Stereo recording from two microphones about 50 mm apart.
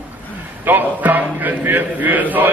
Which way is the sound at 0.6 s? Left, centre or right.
Right.